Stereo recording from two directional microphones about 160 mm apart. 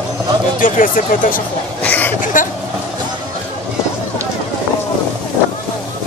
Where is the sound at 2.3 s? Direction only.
55° left (ahead or behind).